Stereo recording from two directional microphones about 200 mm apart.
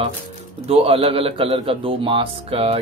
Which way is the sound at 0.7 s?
30° right (ahead or behind).